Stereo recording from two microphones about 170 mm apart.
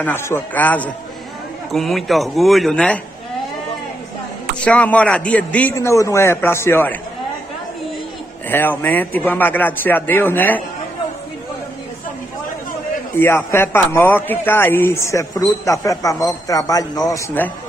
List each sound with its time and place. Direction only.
0.0 s a man's voice: 15° left (ahead or behind)
4.6 s speech: 10° left (ahead or behind)
8.5 s speech: 10° left (ahead or behind)
13.1 s speech: 15° left (ahead or behind)